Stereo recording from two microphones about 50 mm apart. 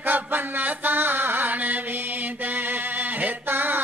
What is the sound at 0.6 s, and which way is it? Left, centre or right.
Music, right.